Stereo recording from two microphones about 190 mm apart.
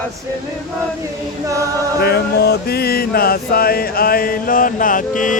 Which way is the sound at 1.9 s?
55° left (ahead or behind).